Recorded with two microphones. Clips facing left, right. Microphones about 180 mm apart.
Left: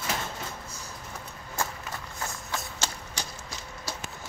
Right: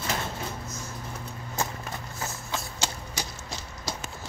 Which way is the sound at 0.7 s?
35° left (ahead or behind).